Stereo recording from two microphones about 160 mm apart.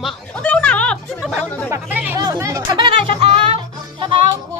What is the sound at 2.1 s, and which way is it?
Music, 20° right (ahead or behind).